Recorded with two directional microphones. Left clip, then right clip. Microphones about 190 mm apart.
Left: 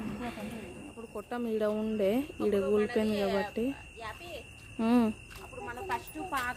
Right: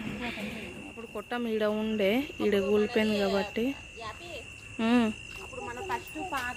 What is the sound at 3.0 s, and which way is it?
Speech, 15° right (ahead or behind).